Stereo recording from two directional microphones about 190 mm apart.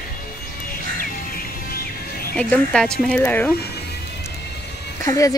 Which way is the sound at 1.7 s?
50° left (ahead or behind).